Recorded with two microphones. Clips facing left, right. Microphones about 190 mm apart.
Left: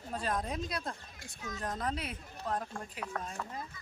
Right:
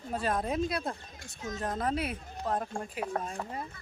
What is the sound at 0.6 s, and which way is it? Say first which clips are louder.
Speech: right 5 dB; 5° right (ahead or behind).